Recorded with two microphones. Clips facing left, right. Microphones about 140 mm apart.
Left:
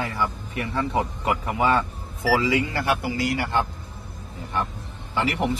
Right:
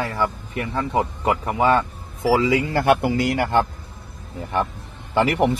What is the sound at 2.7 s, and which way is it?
Speech, 55° right (ahead or behind).